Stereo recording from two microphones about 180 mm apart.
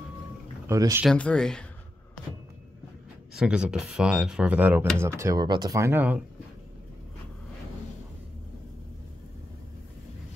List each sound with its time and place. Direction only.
0.7 s speech: 15° right (ahead or behind)
1.0 s speech: 5° left (ahead or behind)
3.3 s speech: 5° right (ahead or behind)